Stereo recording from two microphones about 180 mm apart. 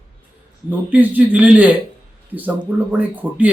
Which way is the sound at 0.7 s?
10° right (ahead or behind).